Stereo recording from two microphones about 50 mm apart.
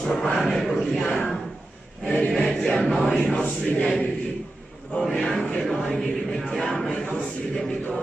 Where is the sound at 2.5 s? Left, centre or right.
Centre.